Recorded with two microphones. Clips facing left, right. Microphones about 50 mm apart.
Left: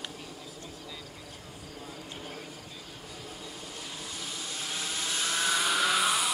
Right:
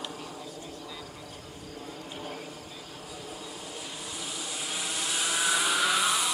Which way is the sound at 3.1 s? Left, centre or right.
Centre.